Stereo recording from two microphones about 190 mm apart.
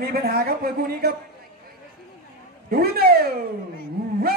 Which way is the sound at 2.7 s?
55° right (ahead or behind).